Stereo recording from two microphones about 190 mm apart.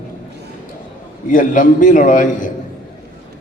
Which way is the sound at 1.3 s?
45° left (ahead or behind).